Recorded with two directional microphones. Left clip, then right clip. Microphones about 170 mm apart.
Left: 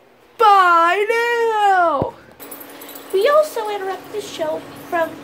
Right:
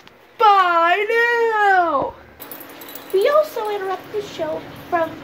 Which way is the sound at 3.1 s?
10° left (ahead or behind).